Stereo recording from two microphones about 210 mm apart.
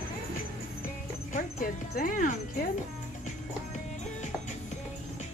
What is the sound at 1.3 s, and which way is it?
Music, 40° left (ahead or behind).